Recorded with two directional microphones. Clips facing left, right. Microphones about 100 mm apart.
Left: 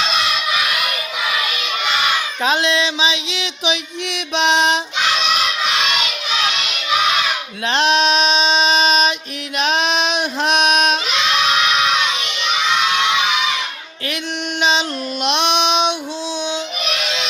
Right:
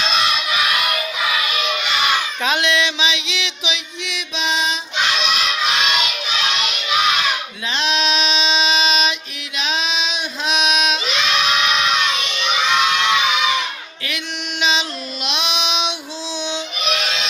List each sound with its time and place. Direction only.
2.4 s a sound: 35° left (ahead or behind); by 4.8 s 65° left (ahead or behind)
7.7 s music: 55° left (ahead or behind)
9.6 s female singing: 55° left (ahead or behind)
14.6 s female singing: 45° left (ahead or behind)